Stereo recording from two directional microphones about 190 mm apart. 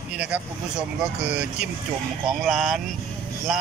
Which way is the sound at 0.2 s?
5° right (ahead or behind).